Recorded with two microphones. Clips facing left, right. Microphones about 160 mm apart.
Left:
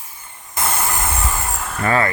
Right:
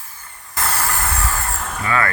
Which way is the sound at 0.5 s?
20° left (ahead or behind).